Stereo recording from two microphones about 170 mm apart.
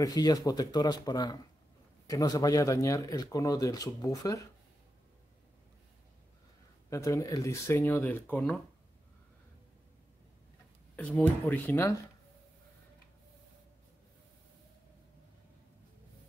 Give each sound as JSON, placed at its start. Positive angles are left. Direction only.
{"t": 0.0, "sound": "speech", "side_deg": 20}
{"t": 6.9, "sound": "speech", "side_deg": 20}
{"t": 8.0, "sound": "speech", "side_deg": 5}
{"t": 11.0, "sound": "speech", "side_deg": 5}